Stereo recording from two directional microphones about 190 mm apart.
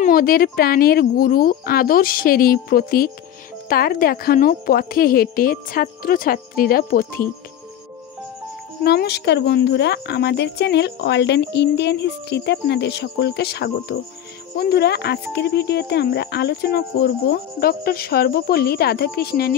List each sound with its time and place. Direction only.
0.0 s a woman's voice: 50° left (ahead or behind)
8.8 s speech: 60° left (ahead or behind)